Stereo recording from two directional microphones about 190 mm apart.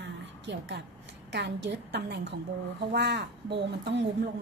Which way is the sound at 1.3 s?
65° right (ahead or behind).